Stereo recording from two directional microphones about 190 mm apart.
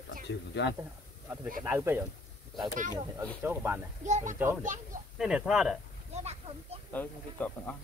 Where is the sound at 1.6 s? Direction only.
10° right (ahead or behind).